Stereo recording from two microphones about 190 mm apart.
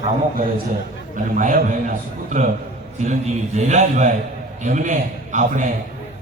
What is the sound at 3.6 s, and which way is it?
A man's voice, 40° right (ahead or behind).